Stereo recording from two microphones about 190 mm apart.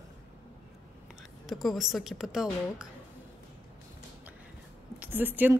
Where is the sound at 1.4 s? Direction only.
Centre (ahead or behind).